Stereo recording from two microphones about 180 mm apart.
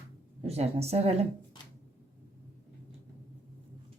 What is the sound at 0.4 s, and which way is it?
Speech, 35° right (ahead or behind).